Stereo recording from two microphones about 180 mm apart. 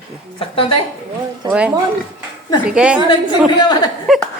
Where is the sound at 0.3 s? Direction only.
30° left (ahead or behind).